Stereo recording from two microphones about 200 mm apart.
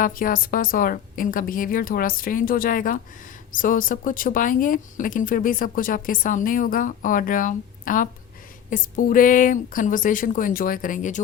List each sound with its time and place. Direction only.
0.0 s a woman's voice: 45° left (ahead or behind)